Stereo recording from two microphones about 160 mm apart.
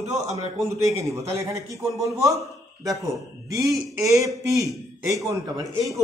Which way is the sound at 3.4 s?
20° right (ahead or behind).